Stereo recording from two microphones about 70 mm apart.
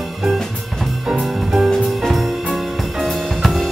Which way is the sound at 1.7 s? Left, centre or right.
Centre.